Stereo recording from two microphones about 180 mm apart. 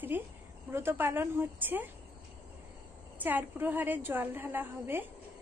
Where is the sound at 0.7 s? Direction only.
15° right (ahead or behind).